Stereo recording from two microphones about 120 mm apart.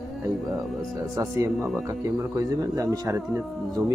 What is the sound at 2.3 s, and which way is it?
A man's voice, 25° right (ahead or behind).